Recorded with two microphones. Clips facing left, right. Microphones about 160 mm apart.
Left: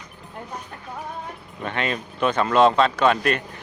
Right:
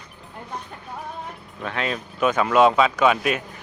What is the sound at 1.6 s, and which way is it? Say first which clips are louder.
Speech: left 1 dB; centre (ahead or behind).